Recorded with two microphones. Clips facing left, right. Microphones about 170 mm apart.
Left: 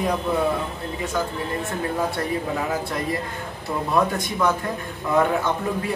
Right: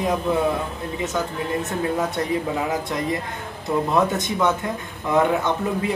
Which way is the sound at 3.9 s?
20° right (ahead or behind).